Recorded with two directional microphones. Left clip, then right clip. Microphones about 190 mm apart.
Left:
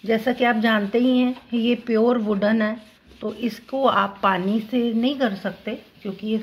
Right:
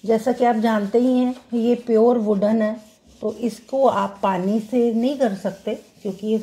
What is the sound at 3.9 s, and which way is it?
A woman's voice, 20° right (ahead or behind).